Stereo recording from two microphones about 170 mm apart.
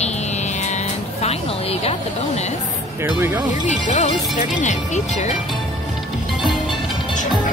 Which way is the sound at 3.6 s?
45° left (ahead or behind).